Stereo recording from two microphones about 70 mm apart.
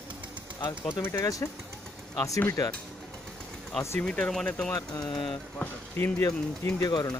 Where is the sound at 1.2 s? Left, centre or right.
Left.